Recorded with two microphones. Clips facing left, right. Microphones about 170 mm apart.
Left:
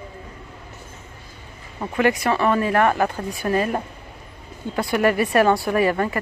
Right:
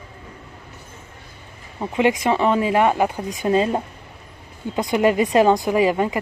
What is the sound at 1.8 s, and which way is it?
Speech, 15° right (ahead or behind).